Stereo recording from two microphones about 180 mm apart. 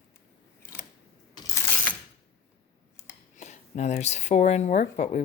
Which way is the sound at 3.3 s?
40° left (ahead or behind).